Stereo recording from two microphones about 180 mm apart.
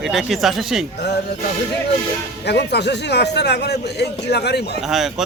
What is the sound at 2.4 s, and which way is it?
A man's voice, 70° left (ahead or behind).